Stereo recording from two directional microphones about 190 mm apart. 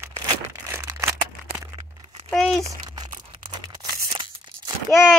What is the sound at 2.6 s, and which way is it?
Crumpling, 15° right (ahead or behind).